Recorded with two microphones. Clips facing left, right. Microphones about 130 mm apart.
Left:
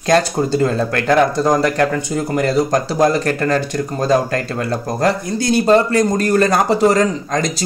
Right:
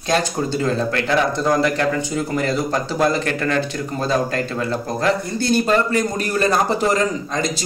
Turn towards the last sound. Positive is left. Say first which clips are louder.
# left 5 dB
turn(degrees=40)  # may be behind; listen again after turning